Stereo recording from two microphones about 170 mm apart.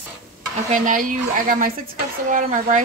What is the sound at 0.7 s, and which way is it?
Speech, 50° right (ahead or behind).